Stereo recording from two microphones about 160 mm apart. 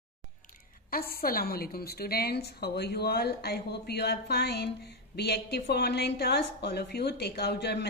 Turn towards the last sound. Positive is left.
turn(degrees=90)